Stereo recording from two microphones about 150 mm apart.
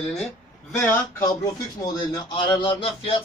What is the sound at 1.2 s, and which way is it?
Speech, 25° left (ahead or behind).